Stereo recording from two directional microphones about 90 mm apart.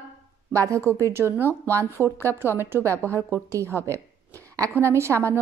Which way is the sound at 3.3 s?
30° right (ahead or behind).